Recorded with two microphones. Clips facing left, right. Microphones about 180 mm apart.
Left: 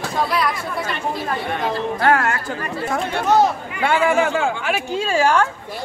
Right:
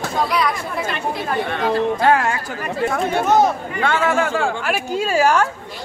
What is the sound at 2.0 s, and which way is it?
Speech, 15° right (ahead or behind).